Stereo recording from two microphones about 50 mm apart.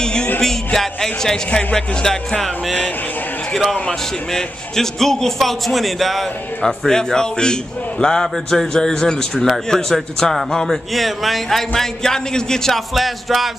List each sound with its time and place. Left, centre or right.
0.0 s music: centre
0.7 s a man's voice: centre
4.3 s a man's voice: centre
6.9 s a man's voice: centre